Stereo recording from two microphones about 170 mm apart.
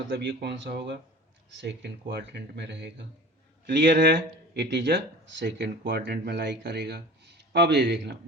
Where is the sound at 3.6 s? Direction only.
75° right (ahead or behind).